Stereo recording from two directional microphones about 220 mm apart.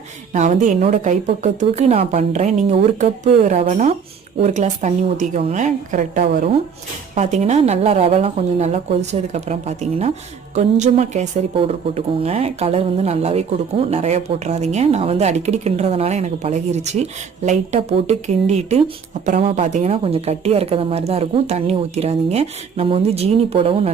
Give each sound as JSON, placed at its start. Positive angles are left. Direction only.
{"t": 0.3, "sound": "a woman's voice", "side_deg": -30}